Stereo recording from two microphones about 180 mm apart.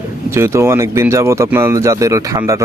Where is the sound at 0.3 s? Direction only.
15° right (ahead or behind).